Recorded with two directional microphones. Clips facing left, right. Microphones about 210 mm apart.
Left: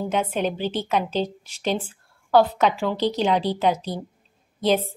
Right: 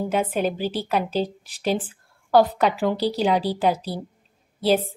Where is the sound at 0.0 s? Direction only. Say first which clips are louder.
Right 1 dB; 10° right (ahead or behind).